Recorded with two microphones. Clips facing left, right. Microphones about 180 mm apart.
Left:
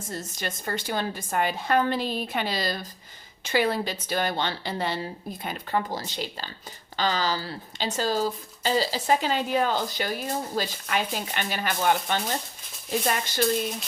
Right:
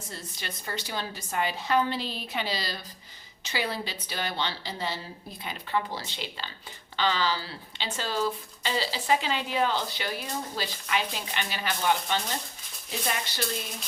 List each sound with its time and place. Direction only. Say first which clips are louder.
0.1 s speech: left 7 dB; 45° left (ahead or behind)
5.4 s speech: left 2 dB; 45° left (ahead or behind)